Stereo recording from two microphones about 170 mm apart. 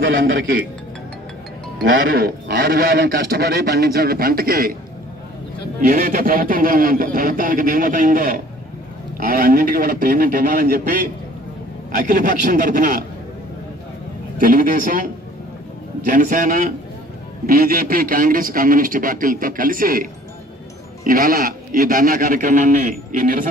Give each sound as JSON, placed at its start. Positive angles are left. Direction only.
{"t": 0.0, "sound": "speech", "side_deg": -90}
{"t": 2.0, "sound": "a man's voice", "side_deg": -60}
{"t": 5.8, "sound": "a man's voice", "side_deg": -55}
{"t": 12.1, "sound": "a man's voice", "side_deg": -50}
{"t": 14.4, "sound": "a man's voice", "side_deg": -55}
{"t": 16.1, "sound": "a man's voice", "side_deg": -50}